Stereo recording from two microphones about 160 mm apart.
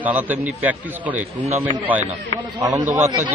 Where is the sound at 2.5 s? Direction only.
20° right (ahead or behind).